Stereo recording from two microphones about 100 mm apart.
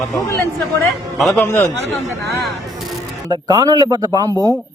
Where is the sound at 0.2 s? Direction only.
35° left (ahead or behind).